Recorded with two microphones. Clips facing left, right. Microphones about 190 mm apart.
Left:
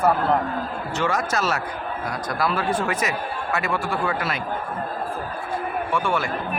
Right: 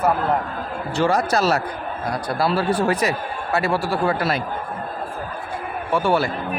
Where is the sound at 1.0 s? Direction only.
35° right (ahead or behind).